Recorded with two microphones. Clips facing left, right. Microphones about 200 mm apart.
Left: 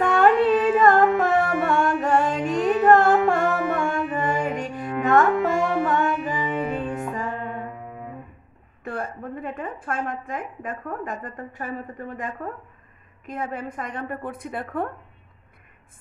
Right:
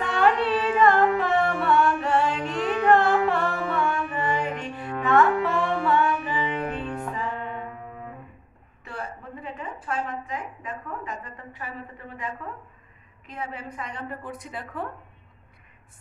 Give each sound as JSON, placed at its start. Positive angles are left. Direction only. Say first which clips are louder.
{"t": 0.0, "sound": "carnatic music", "louder": "left 5 dB", "side_deg": 45}
{"t": 5.0, "sound": "music", "louder": "left 2 dB", "side_deg": 45}
{"t": 8.8, "sound": "a woman's voice", "louder": "left 6 dB", "side_deg": 50}